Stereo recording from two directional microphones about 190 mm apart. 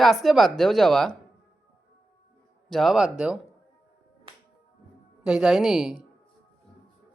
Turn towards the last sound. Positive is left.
turn(degrees=0)  # may be behind; listen again after turning